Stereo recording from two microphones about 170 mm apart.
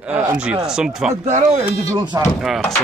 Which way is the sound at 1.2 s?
40° right (ahead or behind).